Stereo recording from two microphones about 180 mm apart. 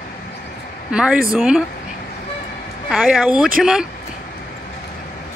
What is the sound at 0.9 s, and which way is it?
Speech, 5° right (ahead or behind).